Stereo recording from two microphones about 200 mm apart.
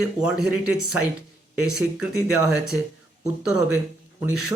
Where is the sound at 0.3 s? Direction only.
90° left.